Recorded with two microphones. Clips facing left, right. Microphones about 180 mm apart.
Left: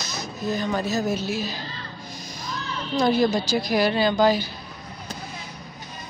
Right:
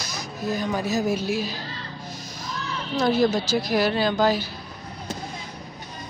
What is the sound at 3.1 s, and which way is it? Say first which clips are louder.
A woman's voice: right 1 dB; 5° right (ahead or behind).